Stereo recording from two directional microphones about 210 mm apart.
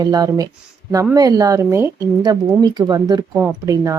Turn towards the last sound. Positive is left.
turn(degrees=-15)  # may be behind; listen again after turning